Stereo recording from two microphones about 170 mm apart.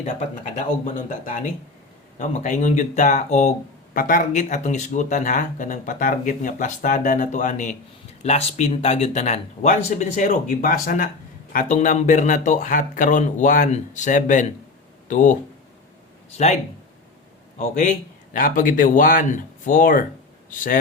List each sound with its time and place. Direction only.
0.0 s speech: 45° left (ahead or behind)
17.6 s speech: 45° left (ahead or behind)